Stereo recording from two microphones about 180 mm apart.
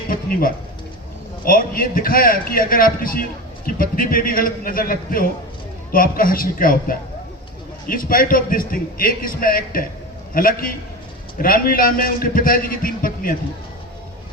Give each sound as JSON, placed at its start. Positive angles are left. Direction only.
{"t": 0.1, "sound": "a man's voice", "side_deg": 55}